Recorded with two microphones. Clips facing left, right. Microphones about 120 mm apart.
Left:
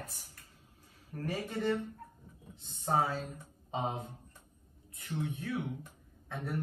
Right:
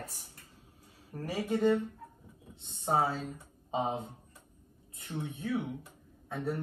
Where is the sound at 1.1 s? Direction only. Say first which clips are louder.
Left 1 dB; 25° right (ahead or behind).